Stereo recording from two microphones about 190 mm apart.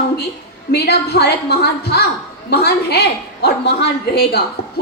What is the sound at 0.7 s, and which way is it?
A woman's voice, 60° left (ahead or behind).